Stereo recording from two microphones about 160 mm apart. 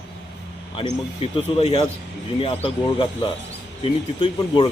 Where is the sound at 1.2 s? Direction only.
35° left (ahead or behind).